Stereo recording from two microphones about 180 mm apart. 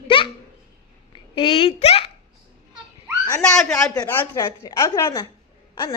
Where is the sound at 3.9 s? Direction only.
15° left (ahead or behind).